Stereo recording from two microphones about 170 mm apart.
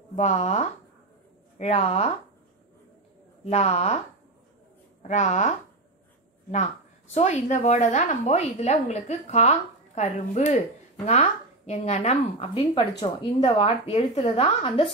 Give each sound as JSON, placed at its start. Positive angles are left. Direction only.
{"t": 0.1, "sound": "a woman's voice", "side_deg": 45}
{"t": 3.4, "sound": "a woman's voice", "side_deg": 40}
{"t": 5.0, "sound": "a woman's voice", "side_deg": 45}
{"t": 7.2, "sound": "a woman's voice", "side_deg": 40}